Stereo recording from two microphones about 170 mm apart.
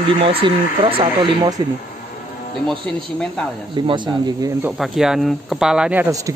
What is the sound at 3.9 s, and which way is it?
Speech, 25° right (ahead or behind).